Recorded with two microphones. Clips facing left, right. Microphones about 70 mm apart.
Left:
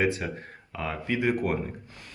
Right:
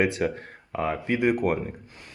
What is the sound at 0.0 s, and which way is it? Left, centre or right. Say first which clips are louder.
Speech: right 3 dB; right.